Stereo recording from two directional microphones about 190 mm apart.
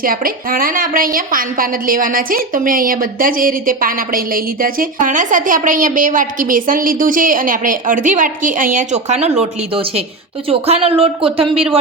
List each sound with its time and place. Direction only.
0.0 s a woman's voice: 50° right (ahead or behind); by 11.8 s 30° right (ahead or behind)